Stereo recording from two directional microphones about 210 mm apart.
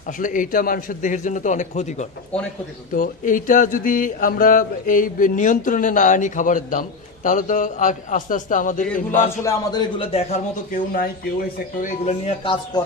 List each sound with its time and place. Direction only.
0.2 s speech: 40° left (ahead or behind)
9.1 s a man's voice: 15° left (ahead or behind)